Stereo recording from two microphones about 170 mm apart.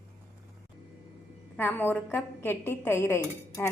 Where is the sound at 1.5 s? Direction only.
10° left (ahead or behind).